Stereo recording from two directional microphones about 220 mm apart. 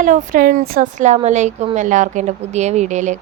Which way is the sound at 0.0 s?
35° right (ahead or behind).